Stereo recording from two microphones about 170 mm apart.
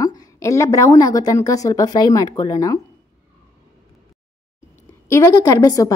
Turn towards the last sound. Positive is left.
turn(degrees=20)  # may be behind; listen again after turning